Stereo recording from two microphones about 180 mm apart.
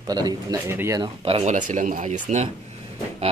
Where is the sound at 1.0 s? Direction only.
30° right (ahead or behind).